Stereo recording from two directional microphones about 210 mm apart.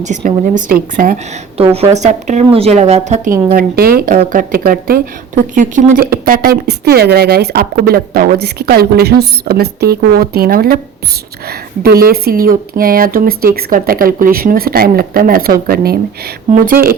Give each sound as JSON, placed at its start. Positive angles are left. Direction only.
{"t": 0.0, "sound": "a woman's voice", "side_deg": -35}
{"t": 1.5, "sound": "a woman's voice", "side_deg": -30}
{"t": 3.5, "sound": "a woman's voice", "side_deg": -45}